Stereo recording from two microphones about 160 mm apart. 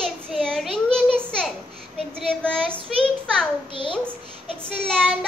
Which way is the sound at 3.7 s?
30° left (ahead or behind).